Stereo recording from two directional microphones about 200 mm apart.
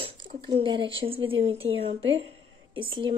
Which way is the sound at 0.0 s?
25° right (ahead or behind).